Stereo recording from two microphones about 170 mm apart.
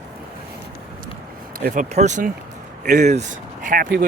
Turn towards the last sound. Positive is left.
turn(degrees=-60)  # may be behind; listen again after turning